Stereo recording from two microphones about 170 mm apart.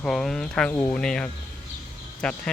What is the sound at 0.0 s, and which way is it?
Speech, 5° left (ahead or behind).